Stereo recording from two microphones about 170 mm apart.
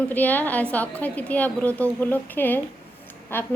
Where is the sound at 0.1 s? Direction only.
10° left (ahead or behind).